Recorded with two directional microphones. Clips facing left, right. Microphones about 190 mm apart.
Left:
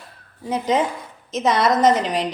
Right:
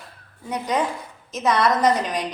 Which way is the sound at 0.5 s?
25° left (ahead or behind).